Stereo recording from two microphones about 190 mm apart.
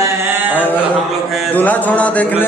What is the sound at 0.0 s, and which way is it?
Mantra, 10° right (ahead or behind).